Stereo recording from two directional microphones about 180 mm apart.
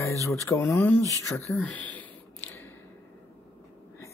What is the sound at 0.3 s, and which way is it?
Speech, 15° left (ahead or behind).